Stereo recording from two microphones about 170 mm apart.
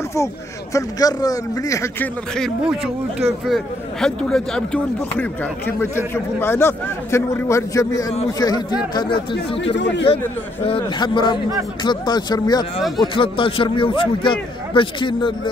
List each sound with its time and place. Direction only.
0.7 s a man's voice: 20° left (ahead or behind)
2.3 s a man's voice: centre (ahead or behind); by 9.0 s 25° left (ahead or behind)
9.8 s speech: 90° left
10.0 s a man's voice: 35° left (ahead or behind)